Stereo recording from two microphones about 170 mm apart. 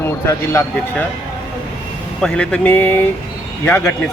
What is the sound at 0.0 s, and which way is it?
A man's voice, 15° left (ahead or behind).